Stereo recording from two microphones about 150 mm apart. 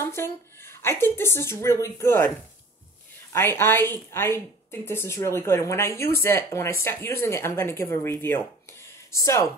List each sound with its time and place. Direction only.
0.1 s speech: 15° left (ahead or behind)
3.3 s speech: 15° left (ahead or behind)